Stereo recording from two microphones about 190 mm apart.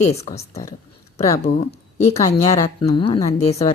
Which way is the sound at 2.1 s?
15° left (ahead or behind).